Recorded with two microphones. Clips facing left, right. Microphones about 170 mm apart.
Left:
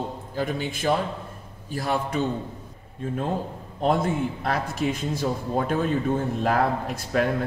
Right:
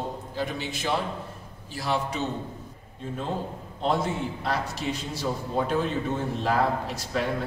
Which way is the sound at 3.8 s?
55° left (ahead or behind).